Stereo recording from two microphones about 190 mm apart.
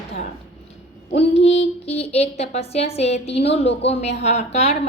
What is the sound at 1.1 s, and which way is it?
A woman's voice, 35° left (ahead or behind).